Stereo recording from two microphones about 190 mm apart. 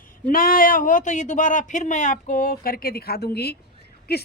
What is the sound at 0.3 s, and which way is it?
A woman's voice, 50° left (ahead or behind).